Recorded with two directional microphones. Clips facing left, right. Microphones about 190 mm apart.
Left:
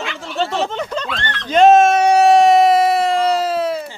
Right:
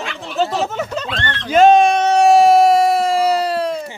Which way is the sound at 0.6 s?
5° right (ahead or behind).